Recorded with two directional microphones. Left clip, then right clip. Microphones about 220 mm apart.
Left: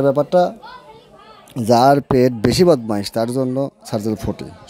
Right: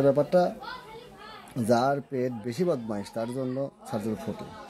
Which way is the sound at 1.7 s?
40° left (ahead or behind).